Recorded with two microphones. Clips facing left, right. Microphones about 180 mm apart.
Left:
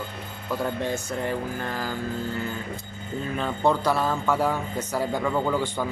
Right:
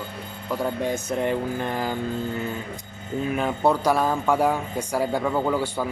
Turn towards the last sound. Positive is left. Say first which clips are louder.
# right 1 dB
turn(degrees=-10)  # may be behind; listen again after turning